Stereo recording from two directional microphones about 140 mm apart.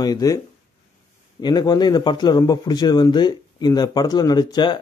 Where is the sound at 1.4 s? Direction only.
30° left (ahead or behind).